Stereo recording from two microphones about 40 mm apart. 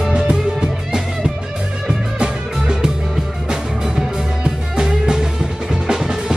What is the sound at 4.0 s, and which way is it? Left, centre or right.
Music, centre.